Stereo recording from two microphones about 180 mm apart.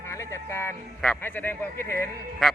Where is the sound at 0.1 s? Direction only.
15° left (ahead or behind).